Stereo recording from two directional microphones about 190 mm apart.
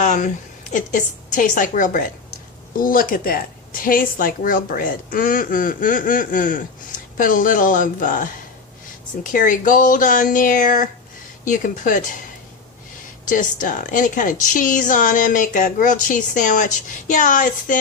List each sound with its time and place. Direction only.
0.0 s a woman's voice: 40° left (ahead or behind)
9.3 s a woman's voice: 45° left (ahead or behind)
13.2 s a woman's voice: 45° left (ahead or behind)